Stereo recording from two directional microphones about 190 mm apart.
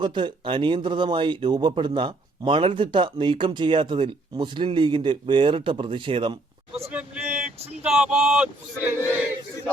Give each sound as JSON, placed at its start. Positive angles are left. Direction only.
{"t": 0.0, "sound": "speech", "side_deg": -25}
{"t": 7.9, "sound": "speech", "side_deg": -5}